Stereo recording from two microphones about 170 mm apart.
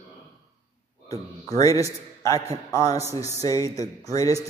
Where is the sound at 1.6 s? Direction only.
20° left (ahead or behind).